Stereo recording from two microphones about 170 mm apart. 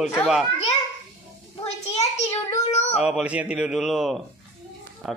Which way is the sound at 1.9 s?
40° left (ahead or behind).